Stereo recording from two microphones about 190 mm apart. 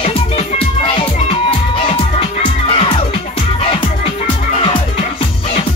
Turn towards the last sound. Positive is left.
turn(degrees=25)  # may be behind; listen again after turning